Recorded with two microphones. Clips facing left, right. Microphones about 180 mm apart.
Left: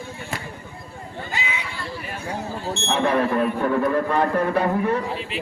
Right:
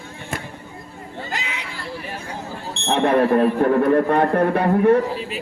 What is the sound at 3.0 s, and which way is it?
A man's voice, 50° right (ahead or behind).